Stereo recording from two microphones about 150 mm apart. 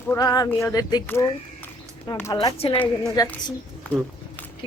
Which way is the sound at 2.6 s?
40° left (ahead or behind).